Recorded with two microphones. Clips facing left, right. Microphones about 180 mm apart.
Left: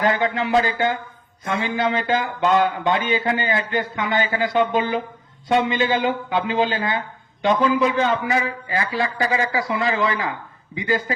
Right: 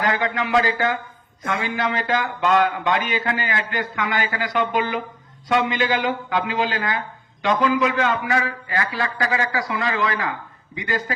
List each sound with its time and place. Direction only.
0.0 s speech: 25° left (ahead or behind)